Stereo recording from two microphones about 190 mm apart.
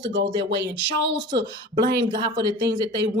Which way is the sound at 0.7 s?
20° right (ahead or behind).